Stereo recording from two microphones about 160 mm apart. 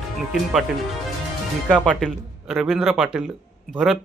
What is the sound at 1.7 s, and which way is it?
Speech, 5° left (ahead or behind).